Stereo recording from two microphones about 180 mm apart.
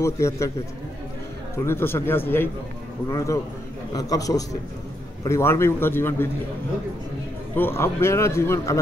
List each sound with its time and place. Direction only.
0.0 s a man's voice: 15° left (ahead or behind)
1.7 s a man's voice: 10° left (ahead or behind)
7.5 s a man's voice: 10° left (ahead or behind)